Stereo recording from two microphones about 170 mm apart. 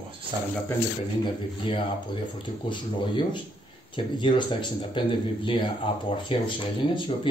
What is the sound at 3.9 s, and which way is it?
Speech, 30° left (ahead or behind).